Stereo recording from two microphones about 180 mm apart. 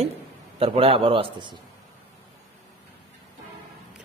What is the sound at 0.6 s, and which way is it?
A man's voice, 30° right (ahead or behind).